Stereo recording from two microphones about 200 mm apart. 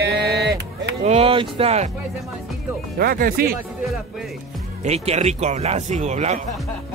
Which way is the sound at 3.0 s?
50° right (ahead or behind).